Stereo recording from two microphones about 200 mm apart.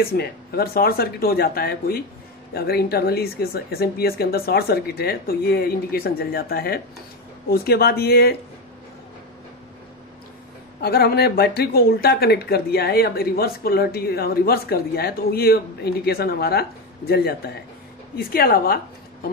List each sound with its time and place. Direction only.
0.0 s speech: 50° left (ahead or behind)
10.8 s speech: 50° left (ahead or behind)